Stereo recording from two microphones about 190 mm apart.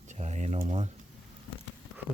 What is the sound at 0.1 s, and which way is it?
Speech, 35° right (ahead or behind).